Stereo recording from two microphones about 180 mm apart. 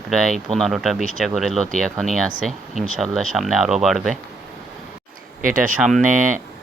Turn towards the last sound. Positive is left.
turn(degrees=-45)  # may be behind; listen again after turning